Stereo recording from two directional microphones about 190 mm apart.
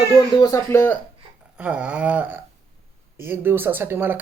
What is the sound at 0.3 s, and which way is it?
Speech, 20° left (ahead or behind).